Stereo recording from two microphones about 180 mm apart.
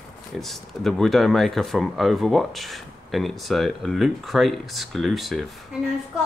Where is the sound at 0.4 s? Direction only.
Centre (ahead or behind).